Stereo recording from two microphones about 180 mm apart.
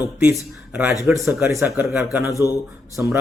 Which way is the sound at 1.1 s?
10° right (ahead or behind).